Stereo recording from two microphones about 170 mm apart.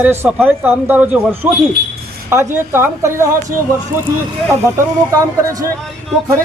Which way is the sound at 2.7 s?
15° right (ahead or behind).